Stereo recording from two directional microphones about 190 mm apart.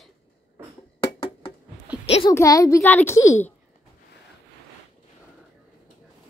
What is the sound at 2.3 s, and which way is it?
A woman's voice, 15° left (ahead or behind).